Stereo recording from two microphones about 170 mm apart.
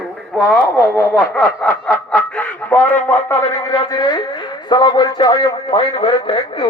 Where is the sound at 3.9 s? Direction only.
25° left (ahead or behind).